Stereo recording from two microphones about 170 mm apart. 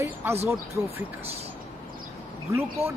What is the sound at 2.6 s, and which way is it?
Speech, 15° right (ahead or behind).